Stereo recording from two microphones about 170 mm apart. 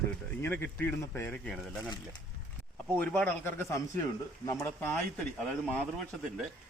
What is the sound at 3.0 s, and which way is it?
Speech, 10° left (ahead or behind).